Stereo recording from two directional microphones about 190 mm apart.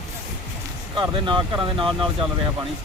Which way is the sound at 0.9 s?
25° right (ahead or behind).